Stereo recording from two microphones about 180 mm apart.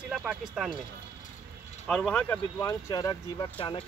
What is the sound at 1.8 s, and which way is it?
Speech, 5° left (ahead or behind).